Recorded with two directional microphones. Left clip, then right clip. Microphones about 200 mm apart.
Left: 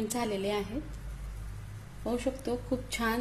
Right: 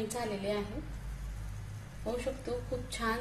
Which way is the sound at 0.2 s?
45° left (ahead or behind).